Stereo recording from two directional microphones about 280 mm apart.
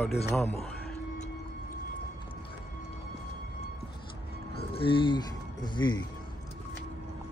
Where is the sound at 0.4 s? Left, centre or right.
Centre.